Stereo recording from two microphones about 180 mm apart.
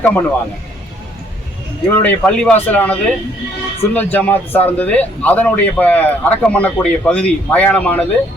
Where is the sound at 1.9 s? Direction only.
10° left (ahead or behind).